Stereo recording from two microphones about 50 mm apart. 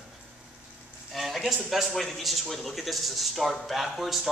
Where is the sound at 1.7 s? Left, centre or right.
Centre.